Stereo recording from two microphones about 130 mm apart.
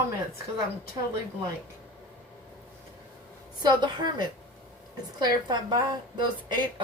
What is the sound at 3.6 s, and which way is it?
A woman's voice, 35° right (ahead or behind).